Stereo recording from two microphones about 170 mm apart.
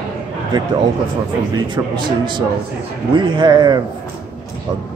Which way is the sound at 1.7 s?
25° right (ahead or behind).